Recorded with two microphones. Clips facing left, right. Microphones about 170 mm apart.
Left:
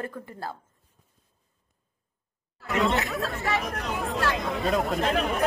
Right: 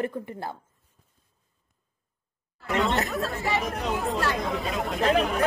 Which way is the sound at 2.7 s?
Centre (ahead or behind).